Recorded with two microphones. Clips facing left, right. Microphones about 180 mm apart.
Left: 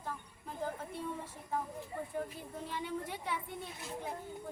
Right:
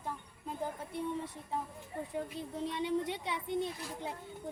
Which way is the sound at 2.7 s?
20° right (ahead or behind).